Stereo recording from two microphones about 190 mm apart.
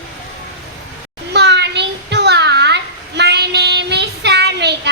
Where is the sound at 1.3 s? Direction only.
65° right (ahead or behind).